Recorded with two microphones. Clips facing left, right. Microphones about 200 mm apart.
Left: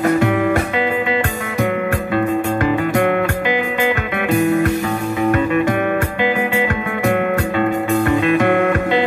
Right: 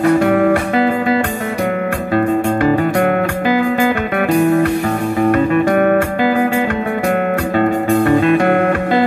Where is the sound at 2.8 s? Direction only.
40° right (ahead or behind).